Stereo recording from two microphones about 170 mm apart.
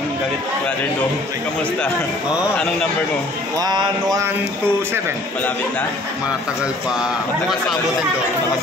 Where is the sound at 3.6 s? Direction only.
25° right (ahead or behind).